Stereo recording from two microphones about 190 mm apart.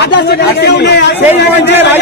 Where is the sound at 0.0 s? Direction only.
60° left (ahead or behind).